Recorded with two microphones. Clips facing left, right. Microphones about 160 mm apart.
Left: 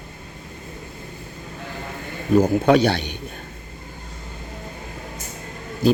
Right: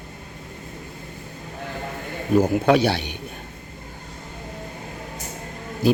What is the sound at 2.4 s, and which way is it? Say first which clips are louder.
Speech: left 2 dB; 5° right (ahead or behind).